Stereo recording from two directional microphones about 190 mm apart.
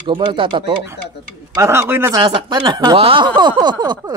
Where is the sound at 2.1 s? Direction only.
25° right (ahead or behind).